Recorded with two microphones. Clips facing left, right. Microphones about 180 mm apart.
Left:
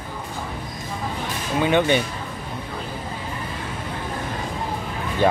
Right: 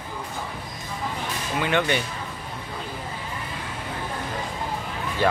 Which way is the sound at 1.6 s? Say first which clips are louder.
Left 5 dB; 20° left (ahead or behind).